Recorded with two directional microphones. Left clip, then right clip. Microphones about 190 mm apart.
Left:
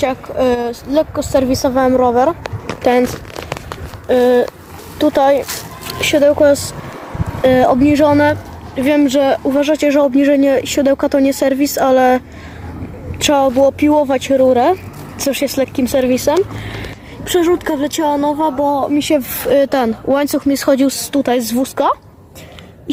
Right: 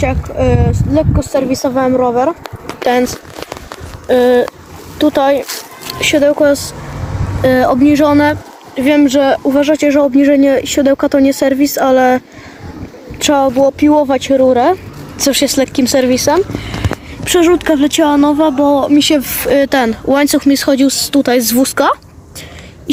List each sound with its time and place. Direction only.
0.0 s speech: 5° left (ahead or behind)
2.4 s speech: 25° left (ahead or behind)
4.1 s speech: 5° right (ahead or behind)
17.2 s speech: 10° right (ahead or behind)